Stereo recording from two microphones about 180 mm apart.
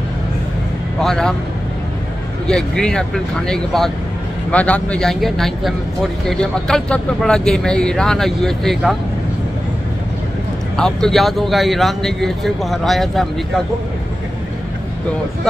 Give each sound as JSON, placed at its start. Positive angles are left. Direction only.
{"t": 1.0, "sound": "speech", "side_deg": 5}
{"t": 2.4, "sound": "speech", "side_deg": 5}
{"t": 10.8, "sound": "speech", "side_deg": 0}